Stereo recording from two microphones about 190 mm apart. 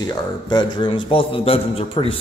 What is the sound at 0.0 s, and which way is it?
A man's voice, 20° left (ahead or behind).